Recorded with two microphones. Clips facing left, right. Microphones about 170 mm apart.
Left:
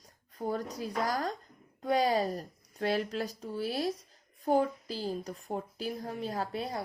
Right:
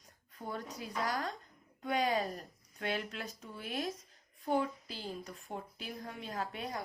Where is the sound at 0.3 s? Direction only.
40° left (ahead or behind).